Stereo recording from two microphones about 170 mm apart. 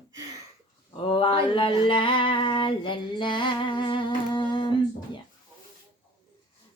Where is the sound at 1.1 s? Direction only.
30° left (ahead or behind).